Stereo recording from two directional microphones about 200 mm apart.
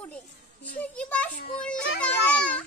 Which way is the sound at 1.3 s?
45° left (ahead or behind).